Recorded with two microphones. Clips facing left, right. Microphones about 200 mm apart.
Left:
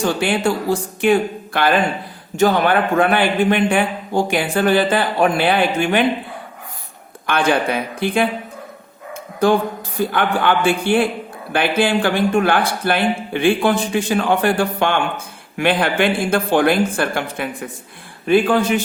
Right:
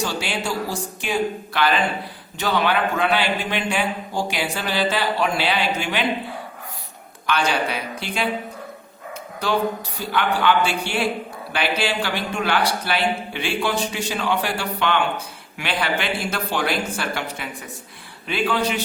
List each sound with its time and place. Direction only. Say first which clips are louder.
0.0 s a man's voice: left 8 dB; 55° left (ahead or behind)
7.3 s a man's voice: left 5 dB; 55° left (ahead or behind)
9.4 s a man's voice: left 6 dB; 50° left (ahead or behind)